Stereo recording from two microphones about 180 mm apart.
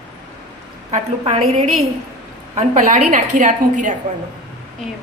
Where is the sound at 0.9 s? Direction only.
35° right (ahead or behind).